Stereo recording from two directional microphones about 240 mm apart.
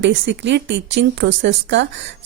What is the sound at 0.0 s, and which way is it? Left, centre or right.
A woman's voice, right.